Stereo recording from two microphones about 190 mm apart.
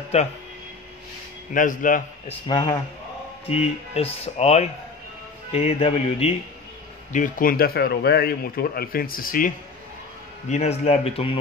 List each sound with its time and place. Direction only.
0.1 s speech: 35° left (ahead or behind)
1.5 s a man's voice: 45° left (ahead or behind)
2.2 s speech: 25° left (ahead or behind)
7.1 s a man's voice: 45° left (ahead or behind)
10.5 s speech: 35° left (ahead or behind)